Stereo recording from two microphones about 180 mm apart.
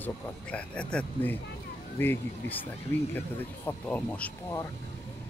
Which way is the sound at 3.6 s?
10° left (ahead or behind).